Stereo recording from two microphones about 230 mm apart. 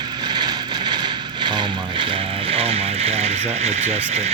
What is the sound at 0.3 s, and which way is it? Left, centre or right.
Vehicle, centre.